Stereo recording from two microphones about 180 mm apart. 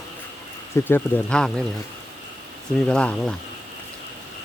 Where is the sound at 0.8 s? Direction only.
10° left (ahead or behind).